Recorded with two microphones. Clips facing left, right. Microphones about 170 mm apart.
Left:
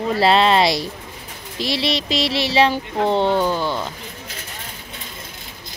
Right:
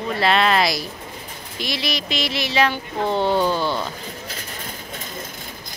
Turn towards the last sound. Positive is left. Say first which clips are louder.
# even
turn(degrees=15)  # may be behind; listen again after turning